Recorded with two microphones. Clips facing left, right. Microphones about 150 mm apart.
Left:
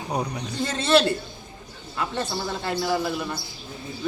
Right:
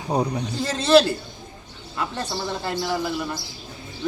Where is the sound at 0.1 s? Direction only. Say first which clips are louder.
Right 5 dB; 30° right (ahead or behind).